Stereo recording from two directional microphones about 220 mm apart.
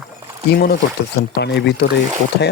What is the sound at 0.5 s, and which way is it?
Speech, 45° left (ahead or behind).